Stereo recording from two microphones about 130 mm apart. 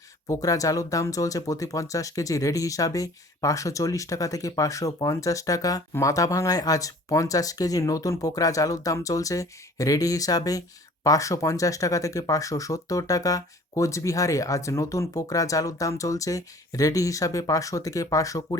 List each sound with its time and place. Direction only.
0.3 s speech: 25° left (ahead or behind)